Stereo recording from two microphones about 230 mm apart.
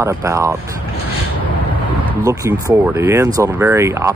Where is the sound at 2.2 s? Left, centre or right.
Centre.